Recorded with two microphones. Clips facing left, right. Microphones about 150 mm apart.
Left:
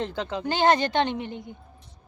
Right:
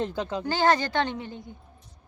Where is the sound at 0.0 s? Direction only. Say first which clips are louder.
Right 1 dB; 15° right (ahead or behind).